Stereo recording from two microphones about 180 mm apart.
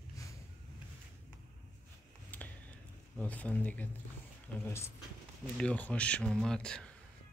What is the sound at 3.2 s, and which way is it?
Speech, 10° left (ahead or behind).